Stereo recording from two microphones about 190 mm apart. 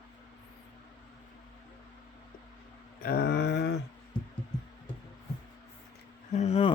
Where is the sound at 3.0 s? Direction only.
55° left (ahead or behind).